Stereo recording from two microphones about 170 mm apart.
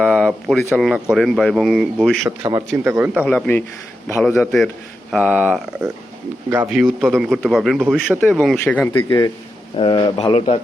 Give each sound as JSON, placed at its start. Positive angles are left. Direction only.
{"t": 0.0, "sound": "speech", "side_deg": -5}
{"t": 2.4, "sound": "a man's voice", "side_deg": -25}
{"t": 2.8, "sound": "speech", "side_deg": -10}
{"t": 3.2, "sound": "speech", "side_deg": 10}
{"t": 8.6, "sound": "speech", "side_deg": 10}
{"t": 9.7, "sound": "speech", "side_deg": 30}